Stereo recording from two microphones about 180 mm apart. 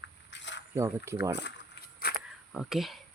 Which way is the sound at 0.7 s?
15° right (ahead or behind).